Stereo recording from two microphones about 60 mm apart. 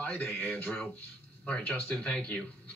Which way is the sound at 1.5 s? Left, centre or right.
Centre.